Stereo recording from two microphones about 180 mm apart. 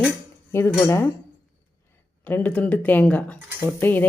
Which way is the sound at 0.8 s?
15° left (ahead or behind).